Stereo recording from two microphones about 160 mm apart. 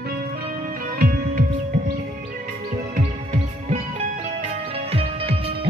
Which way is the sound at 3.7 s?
40° right (ahead or behind).